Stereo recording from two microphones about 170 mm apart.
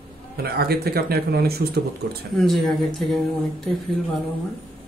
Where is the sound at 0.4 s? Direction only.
65° right (ahead or behind).